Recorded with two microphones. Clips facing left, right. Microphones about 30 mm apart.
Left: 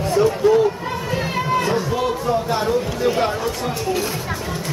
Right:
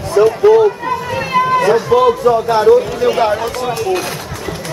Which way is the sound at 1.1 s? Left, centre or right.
Right.